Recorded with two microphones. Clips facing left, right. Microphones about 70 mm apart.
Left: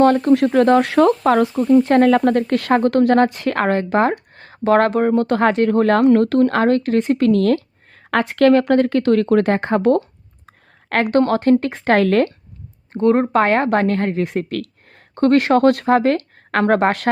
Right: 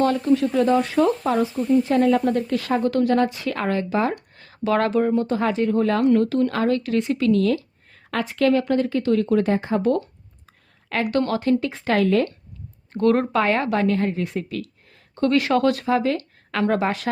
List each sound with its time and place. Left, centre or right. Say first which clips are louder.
0.0 s speech: left 6 dB; left
12.9 s speech: left 3 dB; left
13.3 s speech: left 5 dB; left